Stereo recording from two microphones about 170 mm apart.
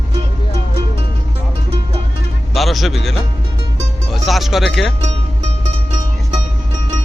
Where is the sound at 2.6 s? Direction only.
Centre (ahead or behind).